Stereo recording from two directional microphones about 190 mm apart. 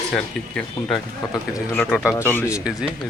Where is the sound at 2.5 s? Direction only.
5° right (ahead or behind).